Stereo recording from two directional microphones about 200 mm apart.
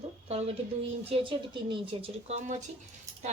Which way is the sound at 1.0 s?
25° right (ahead or behind).